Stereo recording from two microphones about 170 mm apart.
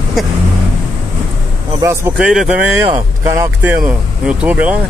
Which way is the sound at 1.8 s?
15° right (ahead or behind).